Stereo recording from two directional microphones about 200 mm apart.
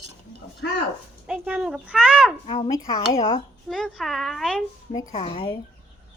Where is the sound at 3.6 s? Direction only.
Centre (ahead or behind).